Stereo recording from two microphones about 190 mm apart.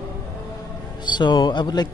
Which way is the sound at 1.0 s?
25° left (ahead or behind).